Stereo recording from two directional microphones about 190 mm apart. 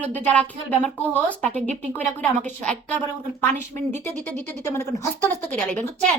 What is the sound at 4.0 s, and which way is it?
Speech, 40° right (ahead or behind).